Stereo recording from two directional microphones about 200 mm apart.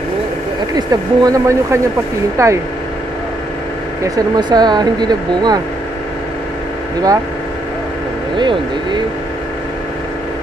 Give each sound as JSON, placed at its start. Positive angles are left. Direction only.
{"t": 0.7, "sound": "speech", "side_deg": -15}
{"t": 4.0, "sound": "speech", "side_deg": -20}
{"t": 8.4, "sound": "speech", "side_deg": -20}